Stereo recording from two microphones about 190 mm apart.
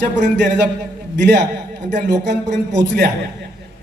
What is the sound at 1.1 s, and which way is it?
Speech, 65° right (ahead or behind).